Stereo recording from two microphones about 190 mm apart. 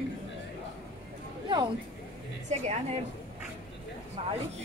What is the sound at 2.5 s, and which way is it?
Speech, 35° right (ahead or behind).